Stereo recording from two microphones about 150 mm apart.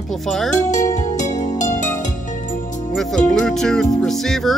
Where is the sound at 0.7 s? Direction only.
55° left (ahead or behind).